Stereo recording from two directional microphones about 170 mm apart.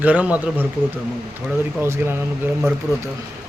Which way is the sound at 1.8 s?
15° right (ahead or behind).